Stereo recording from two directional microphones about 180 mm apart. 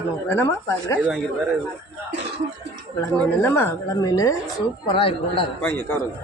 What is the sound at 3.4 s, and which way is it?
A woman's voice, 15° left (ahead or behind).